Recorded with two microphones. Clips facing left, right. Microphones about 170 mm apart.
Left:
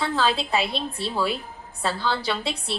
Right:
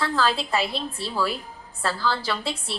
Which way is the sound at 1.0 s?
25° left (ahead or behind).